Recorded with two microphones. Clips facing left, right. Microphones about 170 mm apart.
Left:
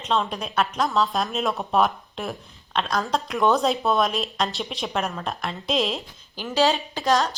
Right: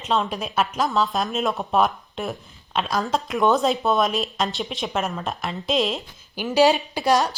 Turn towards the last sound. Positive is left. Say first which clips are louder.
# right 2 dB
turn(degrees=-10)  # may be behind; listen again after turning